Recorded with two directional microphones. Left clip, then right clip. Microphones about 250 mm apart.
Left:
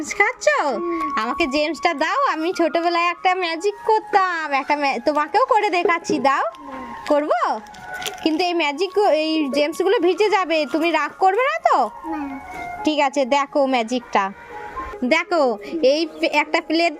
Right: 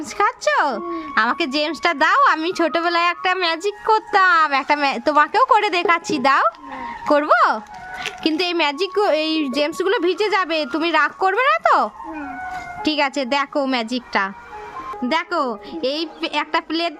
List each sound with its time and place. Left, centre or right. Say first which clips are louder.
0.2 s speech: even; centre
2.6 s speech: even; right
2.9 s speech: even; centre
15.0 s a woman's voice: left 3 dB; centre
15.7 s a woman's voice: left 6 dB; right
16.0 s a woman's voice: left 3 dB; centre